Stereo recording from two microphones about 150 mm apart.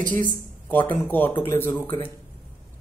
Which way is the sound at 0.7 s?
10° left (ahead or behind).